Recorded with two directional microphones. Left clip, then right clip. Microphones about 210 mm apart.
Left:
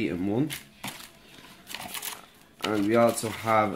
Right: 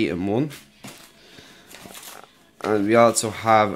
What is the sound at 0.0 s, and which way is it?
Speech, 40° right (ahead or behind).